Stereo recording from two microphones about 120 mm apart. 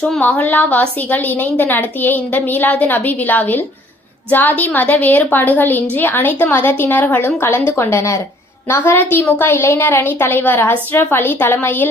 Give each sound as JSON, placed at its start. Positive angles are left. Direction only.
{"t": 0.2, "sound": "a woman's voice", "side_deg": 15}